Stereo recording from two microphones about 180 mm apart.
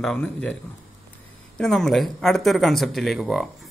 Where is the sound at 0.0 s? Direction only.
5° left (ahead or behind).